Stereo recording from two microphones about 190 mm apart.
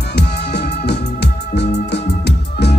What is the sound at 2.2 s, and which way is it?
Music, 60° left (ahead or behind).